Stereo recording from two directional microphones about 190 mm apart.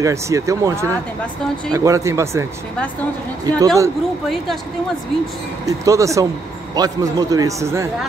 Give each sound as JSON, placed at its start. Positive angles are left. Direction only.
{"t": 0.0, "sound": "speech", "side_deg": -15}
{"t": 3.4, "sound": "a man's voice", "side_deg": -20}
{"t": 5.7, "sound": "a man's voice", "side_deg": -15}